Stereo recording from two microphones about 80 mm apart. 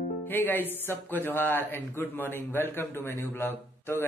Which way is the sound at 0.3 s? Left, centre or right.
Left.